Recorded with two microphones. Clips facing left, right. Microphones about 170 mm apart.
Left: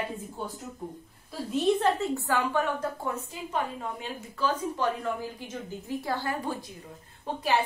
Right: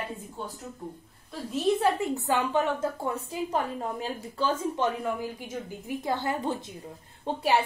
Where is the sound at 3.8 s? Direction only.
35° right (ahead or behind).